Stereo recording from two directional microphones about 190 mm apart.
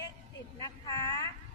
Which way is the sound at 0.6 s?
20° left (ahead or behind).